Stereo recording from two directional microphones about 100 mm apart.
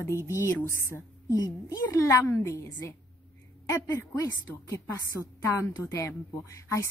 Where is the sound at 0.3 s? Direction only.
30° left (ahead or behind).